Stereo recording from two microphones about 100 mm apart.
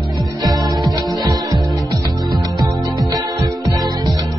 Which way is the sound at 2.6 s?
40° right (ahead or behind).